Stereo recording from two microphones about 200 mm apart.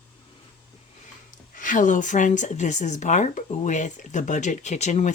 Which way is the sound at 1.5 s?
40° left (ahead or behind).